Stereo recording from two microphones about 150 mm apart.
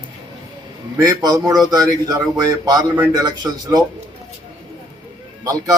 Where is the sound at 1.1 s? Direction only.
25° right (ahead or behind).